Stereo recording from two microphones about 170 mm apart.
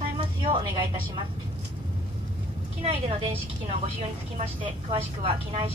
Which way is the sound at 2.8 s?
35° right (ahead or behind).